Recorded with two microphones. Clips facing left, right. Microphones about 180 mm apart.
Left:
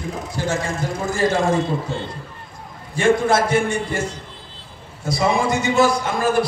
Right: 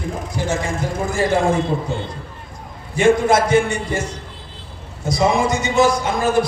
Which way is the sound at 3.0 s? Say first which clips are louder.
Right 2 dB; 15° right (ahead or behind).